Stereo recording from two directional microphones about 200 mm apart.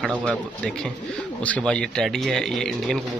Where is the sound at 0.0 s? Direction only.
Centre (ahead or behind).